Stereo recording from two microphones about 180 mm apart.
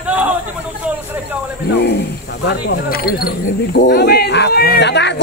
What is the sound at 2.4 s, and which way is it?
Speech, 60° left (ahead or behind).